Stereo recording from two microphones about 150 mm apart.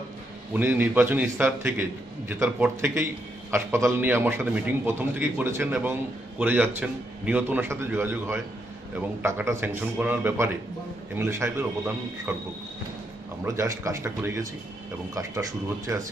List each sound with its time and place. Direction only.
0.5 s a man's voice: 15° right (ahead or behind)
12.3 s a man's voice: 5° right (ahead or behind)
13.4 s a man's voice: 20° right (ahead or behind)